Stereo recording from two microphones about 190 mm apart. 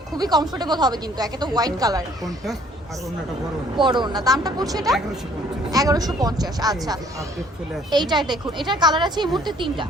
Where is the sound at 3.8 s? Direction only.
25° right (ahead or behind).